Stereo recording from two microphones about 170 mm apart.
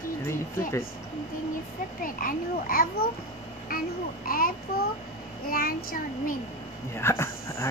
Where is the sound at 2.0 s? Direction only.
55° left (ahead or behind).